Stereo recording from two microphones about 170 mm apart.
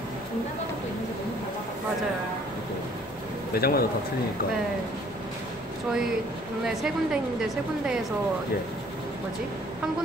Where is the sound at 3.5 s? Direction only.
65° left (ahead or behind).